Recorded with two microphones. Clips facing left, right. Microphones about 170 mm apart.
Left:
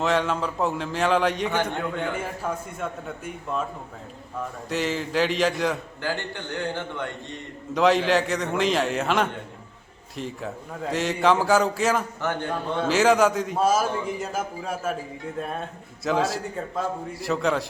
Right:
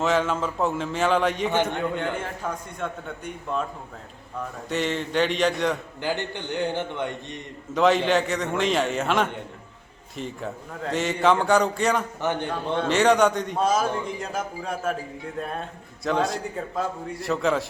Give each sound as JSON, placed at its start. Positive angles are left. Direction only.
{"t": 0.0, "sound": "a man's voice", "side_deg": 0}
{"t": 4.7, "sound": "a man's voice", "side_deg": 0}
{"t": 6.0, "sound": "a man's voice", "side_deg": -20}
{"t": 7.7, "sound": "a man's voice", "side_deg": 0}
{"t": 12.2, "sound": "a man's voice", "side_deg": -20}
{"t": 12.7, "sound": "a man's voice", "side_deg": 5}